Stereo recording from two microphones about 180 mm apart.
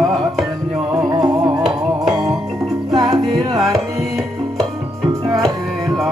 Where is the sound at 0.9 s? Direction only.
20° right (ahead or behind).